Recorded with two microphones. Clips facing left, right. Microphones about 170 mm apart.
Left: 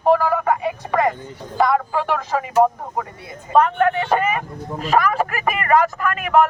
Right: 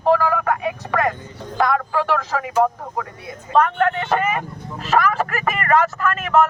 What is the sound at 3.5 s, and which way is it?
Speech, 10° left (ahead or behind).